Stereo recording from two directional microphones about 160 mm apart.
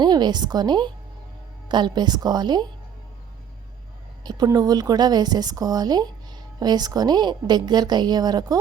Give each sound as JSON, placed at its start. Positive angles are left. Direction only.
{"t": 0.0, "sound": "a woman's voice", "side_deg": -25}
{"t": 4.2, "sound": "a woman's voice", "side_deg": -25}